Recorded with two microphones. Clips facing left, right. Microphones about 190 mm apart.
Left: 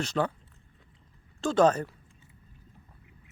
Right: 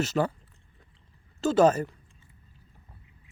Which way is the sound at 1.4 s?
5° right (ahead or behind).